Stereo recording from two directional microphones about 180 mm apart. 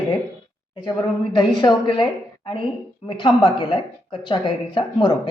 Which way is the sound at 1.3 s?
25° left (ahead or behind).